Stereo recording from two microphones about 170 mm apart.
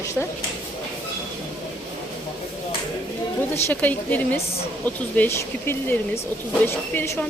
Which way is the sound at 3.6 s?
10° left (ahead or behind).